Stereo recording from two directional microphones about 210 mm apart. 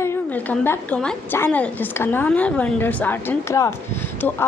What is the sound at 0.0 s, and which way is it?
A woman's voice, 10° left (ahead or behind).